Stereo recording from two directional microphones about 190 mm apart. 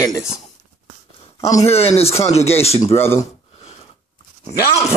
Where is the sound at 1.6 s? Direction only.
30° left (ahead or behind).